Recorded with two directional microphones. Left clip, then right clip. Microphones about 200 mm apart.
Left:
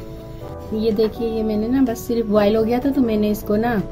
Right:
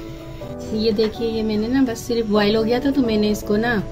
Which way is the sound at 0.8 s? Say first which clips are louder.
Left 1 dB; 45° left (ahead or behind).